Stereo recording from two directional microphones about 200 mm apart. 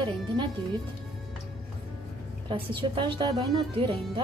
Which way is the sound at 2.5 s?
25° right (ahead or behind).